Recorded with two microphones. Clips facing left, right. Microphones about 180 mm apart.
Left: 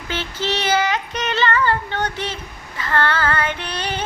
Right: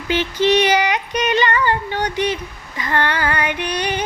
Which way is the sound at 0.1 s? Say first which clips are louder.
Right 8 dB; 15° right (ahead or behind).